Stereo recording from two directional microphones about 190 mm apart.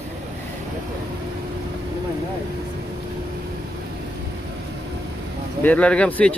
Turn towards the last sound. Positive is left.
turn(degrees=5)  # may be behind; listen again after turning